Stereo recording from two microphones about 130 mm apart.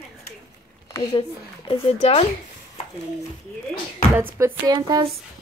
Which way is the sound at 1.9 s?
50° left (ahead or behind).